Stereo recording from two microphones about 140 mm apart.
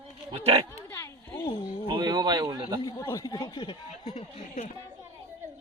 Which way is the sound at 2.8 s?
25° left (ahead or behind).